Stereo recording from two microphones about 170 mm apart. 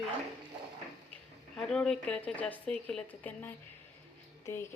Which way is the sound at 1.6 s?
5° left (ahead or behind).